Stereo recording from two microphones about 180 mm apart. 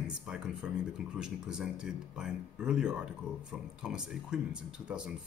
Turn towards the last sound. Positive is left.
turn(degrees=-5)  # may be behind; listen again after turning